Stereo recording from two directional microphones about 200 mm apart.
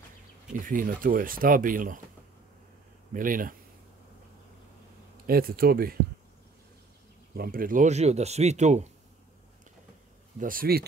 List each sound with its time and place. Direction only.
0.5 s speech: 45° right (ahead or behind)
3.1 s speech: 45° right (ahead or behind)
5.2 s speech: 50° right (ahead or behind)
7.3 s speech: 45° right (ahead or behind)
10.4 s speech: 45° right (ahead or behind)